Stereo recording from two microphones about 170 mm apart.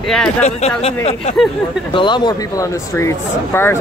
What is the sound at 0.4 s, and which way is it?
Speech, 40° left (ahead or behind).